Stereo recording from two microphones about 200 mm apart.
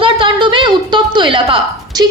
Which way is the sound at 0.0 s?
25° right (ahead or behind).